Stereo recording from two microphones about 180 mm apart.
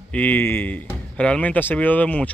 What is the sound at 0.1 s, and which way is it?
Speech, 10° left (ahead or behind).